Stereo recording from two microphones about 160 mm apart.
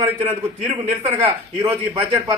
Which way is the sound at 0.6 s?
45° right (ahead or behind).